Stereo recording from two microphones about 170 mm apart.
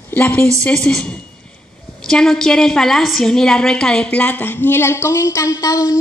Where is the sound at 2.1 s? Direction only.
5° left (ahead or behind).